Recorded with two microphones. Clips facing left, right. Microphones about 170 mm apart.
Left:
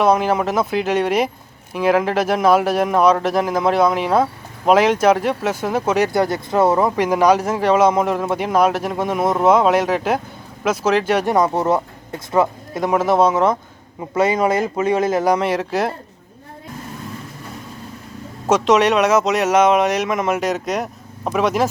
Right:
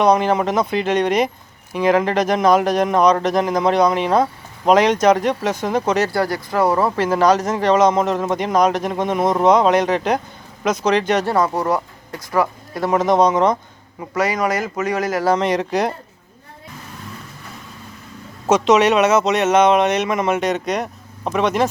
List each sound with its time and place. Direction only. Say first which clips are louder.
0.0 s speech: right 1 dB; 5° left (ahead or behind)
6.1 s speech: left 2 dB; 20° left (ahead or behind)
12.9 s speech: even; 5° left (ahead or behind)
14.1 s speech: left 3 dB; 25° left (ahead or behind)
15.3 s speech: even; 5° left (ahead or behind)
18.4 s speech: right 1 dB; centre (ahead or behind)